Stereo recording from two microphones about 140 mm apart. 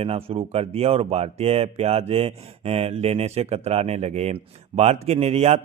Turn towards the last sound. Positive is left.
turn(degrees=-50)  # may be behind; listen again after turning